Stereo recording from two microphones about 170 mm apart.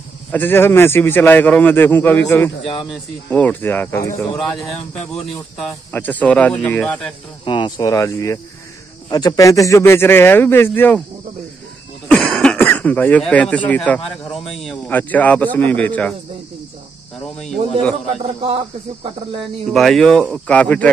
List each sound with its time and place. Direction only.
0.3 s a man's voice: 10° left (ahead or behind)
2.6 s speech: 30° left (ahead or behind)
3.3 s a man's voice: 10° left (ahead or behind)
5.1 s a man's voice: centre (ahead or behind)
7.4 s a man's voice: 30° left (ahead or behind); by 11.0 s 10° left (ahead or behind)
12.1 s a man's voice: 5° left (ahead or behind)
18.2 s speech: 35° right (ahead or behind)
19.7 s a man's voice: centre (ahead or behind)